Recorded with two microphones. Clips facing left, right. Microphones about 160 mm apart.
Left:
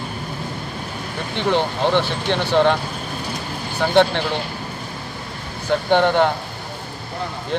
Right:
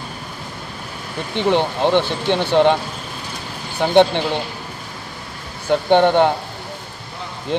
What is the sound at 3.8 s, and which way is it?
Speech, 20° right (ahead or behind).